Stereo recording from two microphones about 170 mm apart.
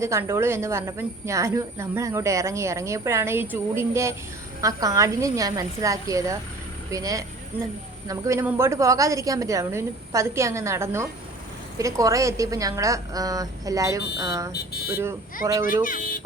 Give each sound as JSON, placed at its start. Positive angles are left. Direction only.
{"t": 0.0, "sound": "a woman's voice", "side_deg": -15}
{"t": 15.8, "sound": "speech", "side_deg": 50}